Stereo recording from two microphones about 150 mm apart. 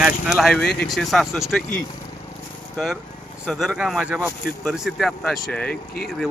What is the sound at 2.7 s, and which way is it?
Speech, centre (ahead or behind).